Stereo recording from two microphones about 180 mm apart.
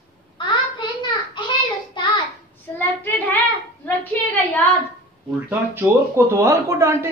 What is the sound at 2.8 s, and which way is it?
Child singing, 10° left (ahead or behind).